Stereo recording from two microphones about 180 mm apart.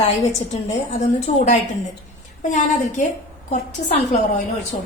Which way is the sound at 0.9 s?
40° left (ahead or behind).